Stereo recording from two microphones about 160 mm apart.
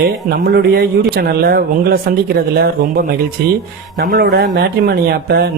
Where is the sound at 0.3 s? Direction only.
75° right (ahead or behind).